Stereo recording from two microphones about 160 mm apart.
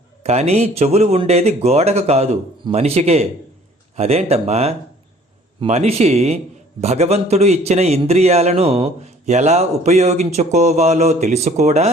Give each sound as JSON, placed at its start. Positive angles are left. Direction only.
{"t": 0.2, "sound": "a man's voice", "side_deg": -40}